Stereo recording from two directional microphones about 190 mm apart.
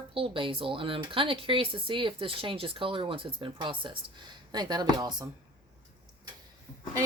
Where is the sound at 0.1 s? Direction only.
25° right (ahead or behind).